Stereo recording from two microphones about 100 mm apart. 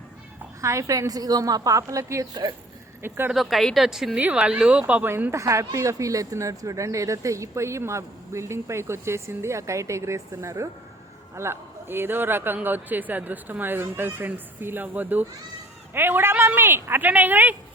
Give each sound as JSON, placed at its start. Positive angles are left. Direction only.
{"t": 0.6, "sound": "a woman's voice", "side_deg": -30}
{"t": 2.3, "sound": "speech", "side_deg": -50}
{"t": 3.0, "sound": "speech", "side_deg": -20}
{"t": 3.3, "sound": "a woman's voice", "side_deg": 0}